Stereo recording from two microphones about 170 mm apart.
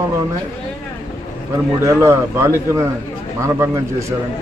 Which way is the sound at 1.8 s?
15° right (ahead or behind).